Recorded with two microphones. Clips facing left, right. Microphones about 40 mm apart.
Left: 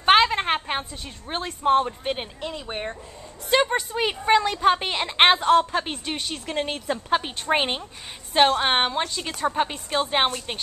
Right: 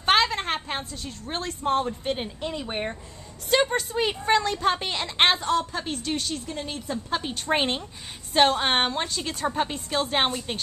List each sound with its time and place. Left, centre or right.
0.0 s a sound: left
0.7 s a woman's voice: left
2.4 s speech: centre
3.4 s a woman's voice: centre
5.4 s a woman's voice: left
6.0 s a woman's voice: left
6.3 s speech: left
7.1 s a woman's voice: left
7.4 s a woman's voice: centre